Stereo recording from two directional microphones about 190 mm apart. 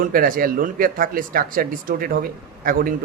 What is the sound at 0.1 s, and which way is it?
A man's voice, 50° right (ahead or behind).